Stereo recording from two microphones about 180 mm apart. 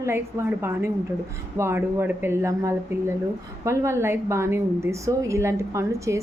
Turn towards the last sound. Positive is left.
turn(degrees=-15)  # may be behind; listen again after turning